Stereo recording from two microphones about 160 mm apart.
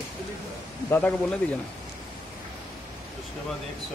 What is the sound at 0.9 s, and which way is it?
Speech, 10° left (ahead or behind).